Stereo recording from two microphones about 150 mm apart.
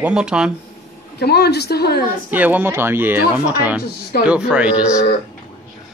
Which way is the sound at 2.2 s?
10° right (ahead or behind).